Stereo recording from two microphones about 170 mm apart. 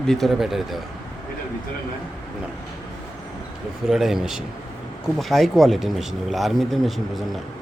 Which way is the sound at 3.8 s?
Centre (ahead or behind).